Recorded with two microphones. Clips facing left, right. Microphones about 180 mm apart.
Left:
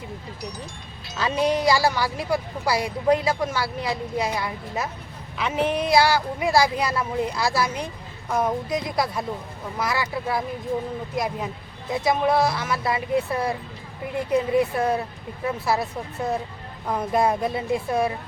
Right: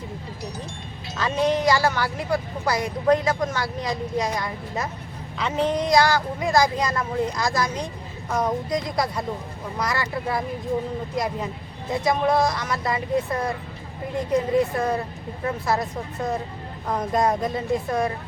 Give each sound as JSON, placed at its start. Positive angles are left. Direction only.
{"t": 1.2, "sound": "speech", "side_deg": 10}